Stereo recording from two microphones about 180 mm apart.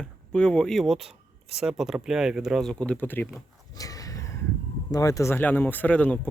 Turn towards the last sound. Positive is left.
turn(degrees=10)  # may be behind; listen again after turning